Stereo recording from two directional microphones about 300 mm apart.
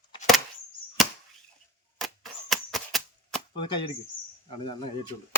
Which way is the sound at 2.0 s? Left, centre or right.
Centre.